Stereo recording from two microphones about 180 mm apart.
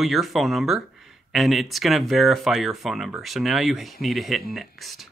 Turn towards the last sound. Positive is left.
turn(degrees=0)  # may be behind; listen again after turning